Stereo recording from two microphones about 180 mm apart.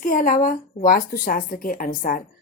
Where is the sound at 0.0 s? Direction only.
45° left (ahead or behind).